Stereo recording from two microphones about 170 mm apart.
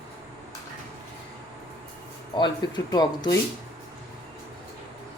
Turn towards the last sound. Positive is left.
turn(degrees=25)  # may be behind; listen again after turning